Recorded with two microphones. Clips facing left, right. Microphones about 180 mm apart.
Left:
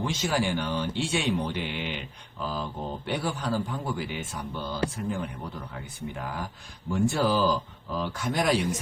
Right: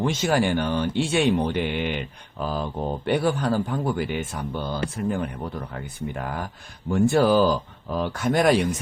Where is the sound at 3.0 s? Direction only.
60° right (ahead or behind).